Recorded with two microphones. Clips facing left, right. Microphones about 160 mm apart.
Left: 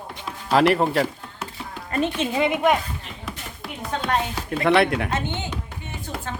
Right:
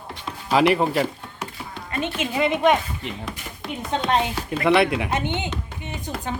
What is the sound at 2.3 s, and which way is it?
Speech, 20° left (ahead or behind).